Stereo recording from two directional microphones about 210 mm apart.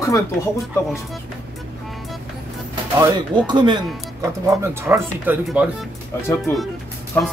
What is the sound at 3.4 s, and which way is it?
Speech, 20° right (ahead or behind).